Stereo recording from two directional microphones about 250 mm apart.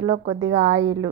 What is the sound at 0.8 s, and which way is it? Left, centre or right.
Speech, right.